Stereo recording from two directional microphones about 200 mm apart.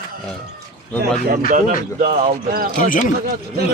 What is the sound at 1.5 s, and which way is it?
Speech, 40° right (ahead or behind).